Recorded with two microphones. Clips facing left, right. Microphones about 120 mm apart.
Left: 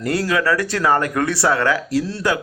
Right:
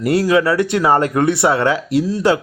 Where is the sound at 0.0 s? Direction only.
20° right (ahead or behind).